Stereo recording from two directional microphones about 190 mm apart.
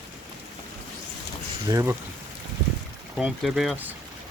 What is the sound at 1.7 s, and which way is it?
Speech, 15° right (ahead or behind).